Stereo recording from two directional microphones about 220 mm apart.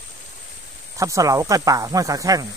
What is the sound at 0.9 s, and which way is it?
Speech, 15° right (ahead or behind).